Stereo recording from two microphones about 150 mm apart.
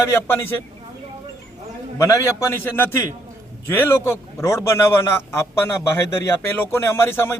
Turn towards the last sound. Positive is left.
turn(degrees=15)  # may be behind; listen again after turning